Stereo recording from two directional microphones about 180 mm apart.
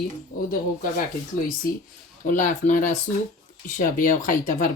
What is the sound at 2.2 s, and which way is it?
Speech, 45° left (ahead or behind).